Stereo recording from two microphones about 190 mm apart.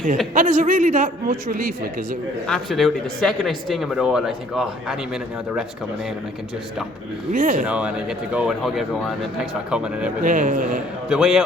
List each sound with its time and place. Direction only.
0.3 s a man's voice: 45° right (ahead or behind)
2.5 s speech: centre (ahead or behind)
7.3 s a man's voice: 50° right (ahead or behind)
7.6 s speech: 5° right (ahead or behind)
10.2 s a man's voice: 45° right (ahead or behind)
11.1 s speech: centre (ahead or behind)